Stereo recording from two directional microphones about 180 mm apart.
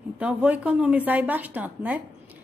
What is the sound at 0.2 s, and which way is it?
A woman's voice, 5° right (ahead or behind).